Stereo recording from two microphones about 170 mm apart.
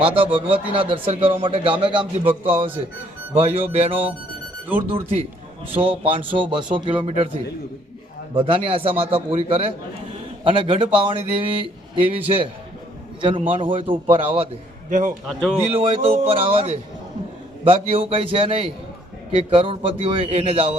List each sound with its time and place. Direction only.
0.0 s a man's voice: 30° right (ahead or behind)
8.4 s speech: 30° right (ahead or behind)
13.5 s speech: 30° right (ahead or behind)
14.8 s a man's voice: 50° right (ahead or behind)
15.3 s speech: centre (ahead or behind)
15.8 s speech: 35° right (ahead or behind)